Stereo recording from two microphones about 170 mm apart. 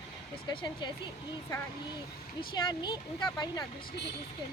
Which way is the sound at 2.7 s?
25° left (ahead or behind).